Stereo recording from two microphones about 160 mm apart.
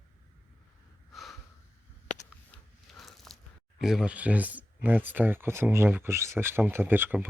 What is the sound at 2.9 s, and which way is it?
Biting, centre (ahead or behind).